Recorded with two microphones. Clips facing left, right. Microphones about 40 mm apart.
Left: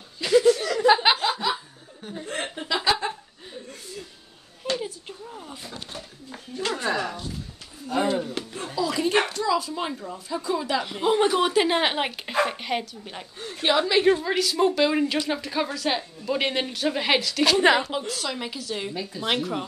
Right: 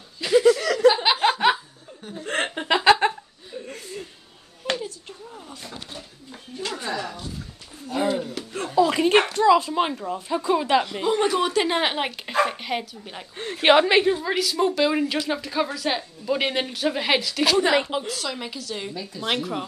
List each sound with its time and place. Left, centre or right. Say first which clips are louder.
0.2 s chuckle: even; centre
0.7 s chuckle: right 2 dB; right
1.1 s chuckle: left 1 dB; centre
1.4 s laughter: right 7 dB; right
2.2 s chuckle: right 7 dB; right
4.6 s a sound: right 1 dB; left
6.6 s a sound: left 3 dB; left
7.9 s a sound: even; centre
8.7 s a sound: right 5 dB; right
9.3 s speech: right 7 dB; right
11.1 s a woman's voice: left 4 dB; centre
13.4 s a woman's voice: right 6 dB; right
14.2 s a woman's voice: even; centre